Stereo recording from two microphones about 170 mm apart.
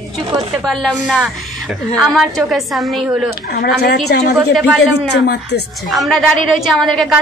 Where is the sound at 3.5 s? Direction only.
70° left (ahead or behind).